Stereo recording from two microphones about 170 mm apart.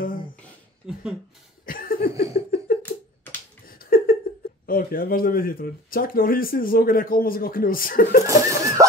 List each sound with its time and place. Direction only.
0.8 s speech: 5° right (ahead or behind)
1.7 s laughter: 60° left (ahead or behind)
3.6 s a sound: 60° left (ahead or behind)
4.6 s speech: 55° left (ahead or behind)
8.3 s laughter: 20° right (ahead or behind)